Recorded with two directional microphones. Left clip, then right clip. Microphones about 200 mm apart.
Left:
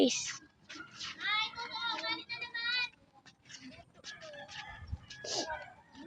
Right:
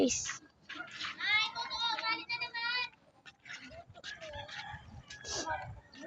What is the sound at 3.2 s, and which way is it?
Goat, 15° right (ahead or behind).